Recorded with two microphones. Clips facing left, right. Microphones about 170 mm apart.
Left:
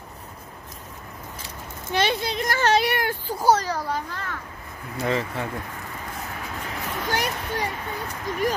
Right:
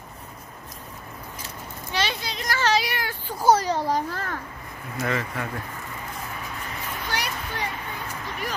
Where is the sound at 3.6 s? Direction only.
30° right (ahead or behind).